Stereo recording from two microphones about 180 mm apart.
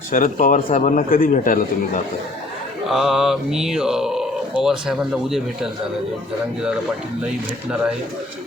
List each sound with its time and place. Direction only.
0.1 s a man's voice: 50° left (ahead or behind)
2.9 s speech: 5° right (ahead or behind)